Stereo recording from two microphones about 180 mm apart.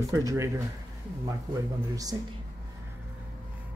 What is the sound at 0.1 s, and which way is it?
Speech, 20° right (ahead or behind).